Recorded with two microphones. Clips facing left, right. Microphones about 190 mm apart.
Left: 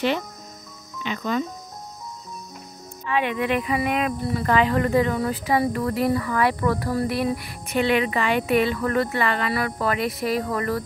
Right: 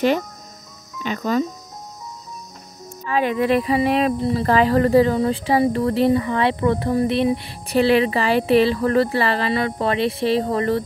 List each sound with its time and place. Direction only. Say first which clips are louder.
1.0 s speech: right 4 dB; 40° right (ahead or behind)
3.1 s speech: right 4 dB; 40° right (ahead or behind)